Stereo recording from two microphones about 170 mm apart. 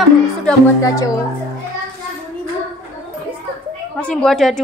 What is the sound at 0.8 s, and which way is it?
Speech, 20° left (ahead or behind).